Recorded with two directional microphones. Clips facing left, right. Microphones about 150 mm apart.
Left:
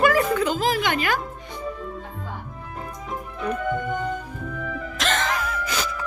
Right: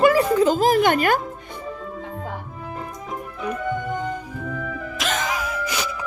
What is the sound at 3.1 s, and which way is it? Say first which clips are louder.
Music: left 1 dB; 10° right (ahead or behind).